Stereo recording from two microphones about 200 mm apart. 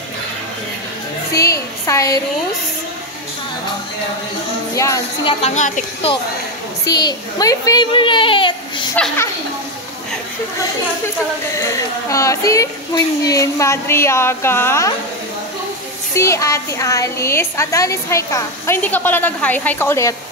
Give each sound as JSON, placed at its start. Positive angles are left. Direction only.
{"t": 1.3, "sound": "speech", "side_deg": 15}
{"t": 4.7, "sound": "a woman's voice", "side_deg": 15}
{"t": 5.4, "sound": "a woman's voice", "side_deg": 35}
{"t": 6.9, "sound": "a child's voice", "side_deg": 20}
{"t": 8.9, "sound": "a woman's voice", "side_deg": 5}
{"t": 11.5, "sound": "a woman's voice", "side_deg": 15}
{"t": 16.2, "sound": "a woman's voice", "side_deg": 15}